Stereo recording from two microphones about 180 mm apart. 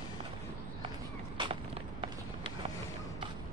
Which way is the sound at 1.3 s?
30° right (ahead or behind).